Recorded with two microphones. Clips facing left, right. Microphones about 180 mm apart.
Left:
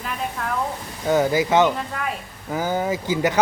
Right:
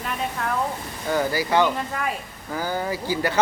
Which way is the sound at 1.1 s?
20° left (ahead or behind).